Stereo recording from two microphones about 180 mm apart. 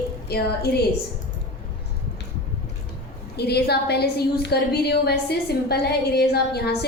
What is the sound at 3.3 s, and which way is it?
A woman's voice, 65° left (ahead or behind).